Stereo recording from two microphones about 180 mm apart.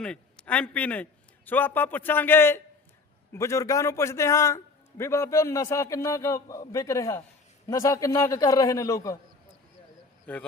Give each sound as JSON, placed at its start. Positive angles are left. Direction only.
{"t": 0.0, "sound": "a man's voice", "side_deg": 5}